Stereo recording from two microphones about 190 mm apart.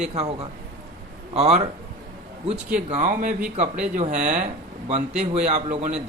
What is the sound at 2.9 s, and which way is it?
A man's voice, 45° right (ahead or behind).